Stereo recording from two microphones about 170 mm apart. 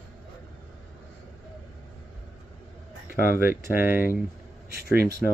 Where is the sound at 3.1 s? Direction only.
55° left (ahead or behind).